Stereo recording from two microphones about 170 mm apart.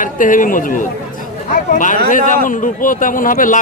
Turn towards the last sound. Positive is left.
turn(degrees=50)  # may be behind; listen again after turning